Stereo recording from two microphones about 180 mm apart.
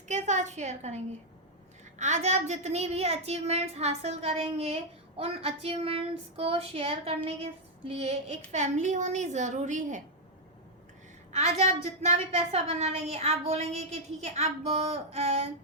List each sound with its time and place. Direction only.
0.1 s a woman's voice: 40° right (ahead or behind)
11.3 s a woman's voice: 40° right (ahead or behind)